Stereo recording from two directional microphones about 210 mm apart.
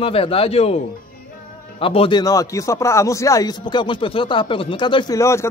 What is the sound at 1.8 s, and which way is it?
Speech, 25° left (ahead or behind).